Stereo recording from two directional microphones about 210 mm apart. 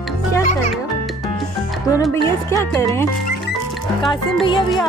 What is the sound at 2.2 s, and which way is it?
Speech, 10° left (ahead or behind).